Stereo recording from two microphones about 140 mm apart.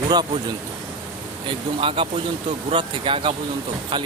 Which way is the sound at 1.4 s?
40° right (ahead or behind).